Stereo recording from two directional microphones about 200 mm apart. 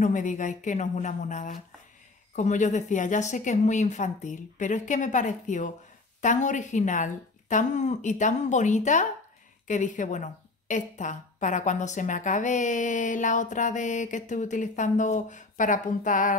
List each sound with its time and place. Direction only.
0.0 s a woman's voice: 40° left (ahead or behind)